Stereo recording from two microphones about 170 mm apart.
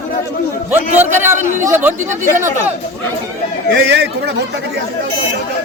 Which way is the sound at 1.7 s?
15° right (ahead or behind).